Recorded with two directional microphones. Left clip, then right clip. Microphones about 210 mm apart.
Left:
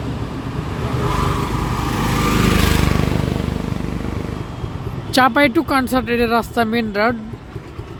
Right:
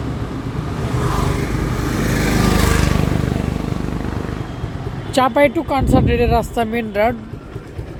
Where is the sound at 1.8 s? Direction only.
Centre (ahead or behind).